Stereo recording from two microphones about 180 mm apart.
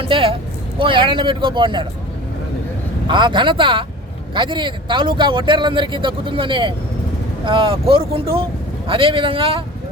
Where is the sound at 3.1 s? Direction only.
25° right (ahead or behind).